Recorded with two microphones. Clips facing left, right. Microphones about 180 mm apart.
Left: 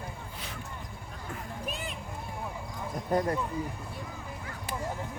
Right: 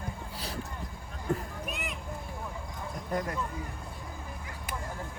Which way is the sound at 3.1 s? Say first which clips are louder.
Left 5 dB; 35° left (ahead or behind).